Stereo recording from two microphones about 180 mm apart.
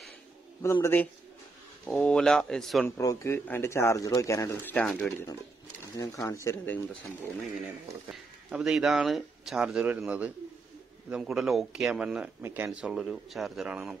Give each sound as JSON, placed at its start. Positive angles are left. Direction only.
{"t": 0.6, "sound": "speech", "side_deg": 15}
{"t": 1.9, "sound": "a man's voice", "side_deg": 5}
{"t": 3.0, "sound": "speech", "side_deg": 20}
{"t": 5.9, "sound": "speech", "side_deg": 20}
{"t": 8.1, "sound": "a man's voice", "side_deg": -5}